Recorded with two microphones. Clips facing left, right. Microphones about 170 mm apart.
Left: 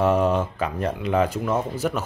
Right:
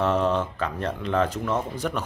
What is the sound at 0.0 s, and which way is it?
Speech, 10° left (ahead or behind).